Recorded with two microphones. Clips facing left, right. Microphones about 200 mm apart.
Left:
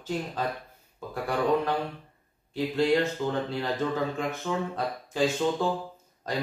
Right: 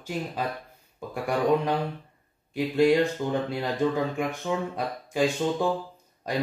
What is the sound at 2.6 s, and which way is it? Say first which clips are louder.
Speech: right 3 dB; 10° right (ahead or behind).